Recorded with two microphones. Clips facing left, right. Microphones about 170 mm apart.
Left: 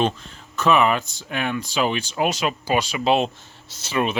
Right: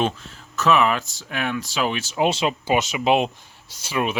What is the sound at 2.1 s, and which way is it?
Speech, 25° right (ahead or behind).